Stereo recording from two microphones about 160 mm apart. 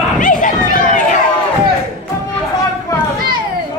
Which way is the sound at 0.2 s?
55° left (ahead or behind).